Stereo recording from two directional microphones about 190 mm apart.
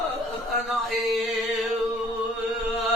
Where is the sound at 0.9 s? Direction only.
Centre (ahead or behind).